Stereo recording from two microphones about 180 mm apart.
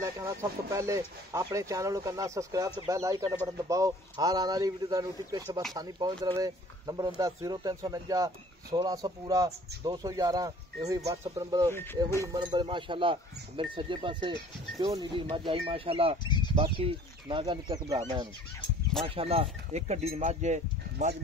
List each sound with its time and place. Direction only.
0.0 s speech: 15° right (ahead or behind)
11.7 s speech: 10° left (ahead or behind)
12.2 s speech: 20° right (ahead or behind)
16.3 s speech: 25° left (ahead or behind)
16.5 s speech: 30° right (ahead or behind)
19.0 s speech: 30° right (ahead or behind)